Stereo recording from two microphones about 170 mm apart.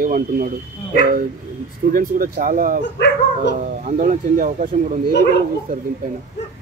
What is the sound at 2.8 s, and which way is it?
Speech, 90° left.